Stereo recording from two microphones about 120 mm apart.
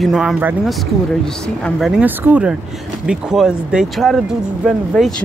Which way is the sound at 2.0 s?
15° right (ahead or behind).